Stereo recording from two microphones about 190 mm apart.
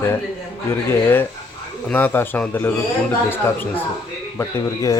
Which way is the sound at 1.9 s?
10° left (ahead or behind).